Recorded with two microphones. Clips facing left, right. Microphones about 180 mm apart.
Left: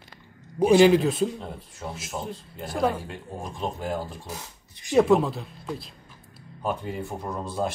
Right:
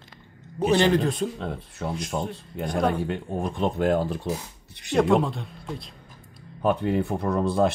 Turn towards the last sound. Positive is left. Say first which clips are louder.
# right 7 dB
turn(degrees=-65)  # may be behind; listen again after turning